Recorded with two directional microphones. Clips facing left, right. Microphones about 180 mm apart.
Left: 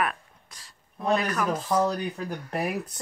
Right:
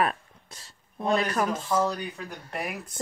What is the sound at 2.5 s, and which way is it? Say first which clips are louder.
Speech: left 4 dB; 35° left (ahead or behind).